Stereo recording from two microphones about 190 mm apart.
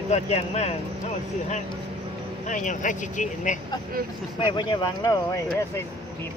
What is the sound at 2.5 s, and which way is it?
Speech, 40° left (ahead or behind).